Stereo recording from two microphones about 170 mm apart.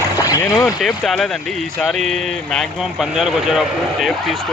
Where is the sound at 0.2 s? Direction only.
20° left (ahead or behind).